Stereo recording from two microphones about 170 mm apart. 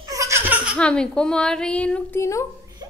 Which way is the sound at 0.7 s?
5° left (ahead or behind).